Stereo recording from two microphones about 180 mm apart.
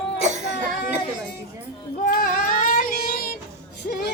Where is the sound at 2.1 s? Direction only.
50° left (ahead or behind).